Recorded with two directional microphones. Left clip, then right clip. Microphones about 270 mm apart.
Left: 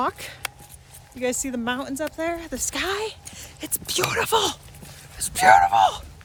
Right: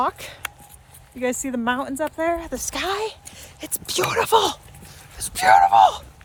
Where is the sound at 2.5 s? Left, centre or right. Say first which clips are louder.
Right 1 dB; centre.